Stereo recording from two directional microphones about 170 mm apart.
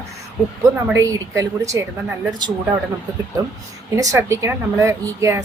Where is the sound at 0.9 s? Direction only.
20° right (ahead or behind).